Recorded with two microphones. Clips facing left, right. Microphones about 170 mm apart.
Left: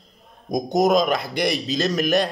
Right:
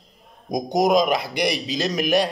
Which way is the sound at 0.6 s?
15° right (ahead or behind).